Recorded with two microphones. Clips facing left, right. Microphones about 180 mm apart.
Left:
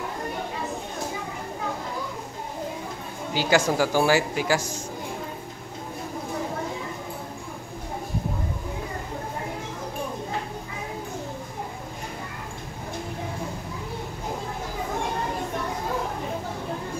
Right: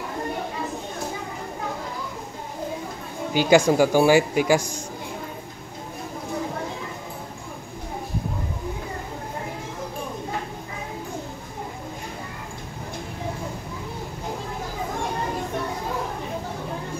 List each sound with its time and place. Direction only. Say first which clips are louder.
3.3 s speech: right 5 dB; 15° right (ahead or behind)